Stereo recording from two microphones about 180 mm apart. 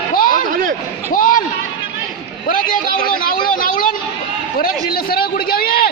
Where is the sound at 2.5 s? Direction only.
50° left (ahead or behind).